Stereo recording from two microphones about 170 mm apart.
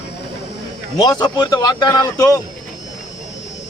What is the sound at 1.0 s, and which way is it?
A man's voice, 25° left (ahead or behind).